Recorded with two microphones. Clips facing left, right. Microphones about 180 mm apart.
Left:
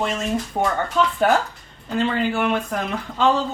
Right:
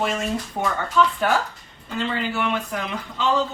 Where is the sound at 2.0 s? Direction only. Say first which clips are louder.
Left 4 dB; 50° left (ahead or behind).